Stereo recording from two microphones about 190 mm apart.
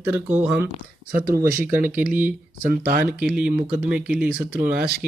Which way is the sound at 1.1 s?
50° right (ahead or behind).